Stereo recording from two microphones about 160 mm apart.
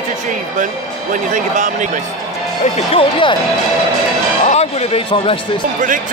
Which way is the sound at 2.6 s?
35° left (ahead or behind).